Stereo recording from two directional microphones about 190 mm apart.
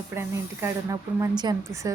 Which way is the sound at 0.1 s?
10° right (ahead or behind).